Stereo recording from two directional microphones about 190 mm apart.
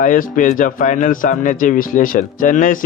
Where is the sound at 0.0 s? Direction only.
45° left (ahead or behind).